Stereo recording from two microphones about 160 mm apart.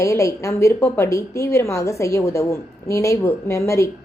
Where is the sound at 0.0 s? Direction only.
20° left (ahead or behind).